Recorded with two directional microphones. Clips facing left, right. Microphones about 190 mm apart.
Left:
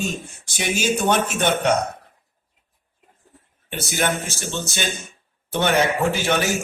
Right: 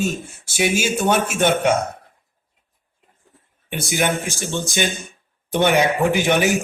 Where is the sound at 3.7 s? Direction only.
15° right (ahead or behind).